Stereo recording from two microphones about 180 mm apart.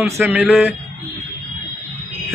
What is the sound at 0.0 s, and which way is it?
Speech, 10° right (ahead or behind).